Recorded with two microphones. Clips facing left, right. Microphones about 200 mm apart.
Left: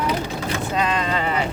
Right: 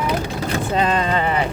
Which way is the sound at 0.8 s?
35° right (ahead or behind).